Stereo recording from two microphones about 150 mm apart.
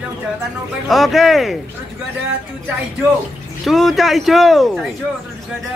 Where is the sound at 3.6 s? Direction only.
Centre (ahead or behind).